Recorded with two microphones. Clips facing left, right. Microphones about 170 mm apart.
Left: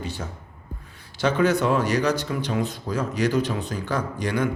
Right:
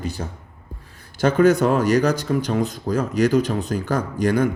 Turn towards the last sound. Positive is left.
turn(degrees=-45)  # may be behind; listen again after turning